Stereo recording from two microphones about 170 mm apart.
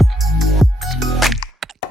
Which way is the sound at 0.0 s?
Centre (ahead or behind).